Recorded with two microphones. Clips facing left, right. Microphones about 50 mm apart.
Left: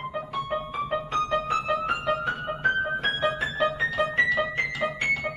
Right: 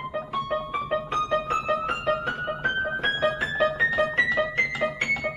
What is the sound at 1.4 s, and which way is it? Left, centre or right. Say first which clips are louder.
Music: even; right.